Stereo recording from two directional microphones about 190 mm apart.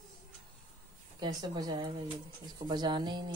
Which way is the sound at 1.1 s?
20° right (ahead or behind).